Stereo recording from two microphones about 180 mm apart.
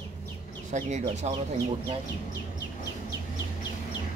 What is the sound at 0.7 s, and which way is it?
Speech, 40° right (ahead or behind).